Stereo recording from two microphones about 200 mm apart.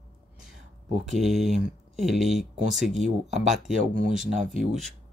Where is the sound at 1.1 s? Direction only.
Centre (ahead or behind).